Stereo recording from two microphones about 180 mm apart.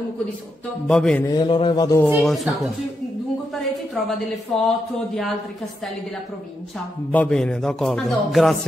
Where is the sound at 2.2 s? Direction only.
Centre (ahead or behind).